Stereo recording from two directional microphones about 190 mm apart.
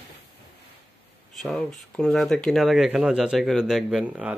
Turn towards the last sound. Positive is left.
turn(degrees=-5)  # may be behind; listen again after turning